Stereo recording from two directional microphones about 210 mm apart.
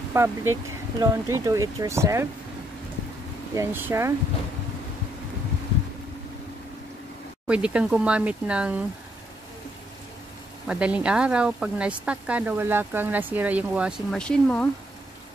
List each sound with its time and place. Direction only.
0.1 s speech: 10° right (ahead or behind)
3.5 s speech: 10° right (ahead or behind)
7.4 s speech: 5° right (ahead or behind)
10.7 s speech: 5° right (ahead or behind)